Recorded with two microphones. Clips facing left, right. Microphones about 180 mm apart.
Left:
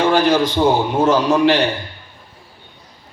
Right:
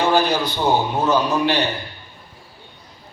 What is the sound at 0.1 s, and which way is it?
A man's voice, 90° left.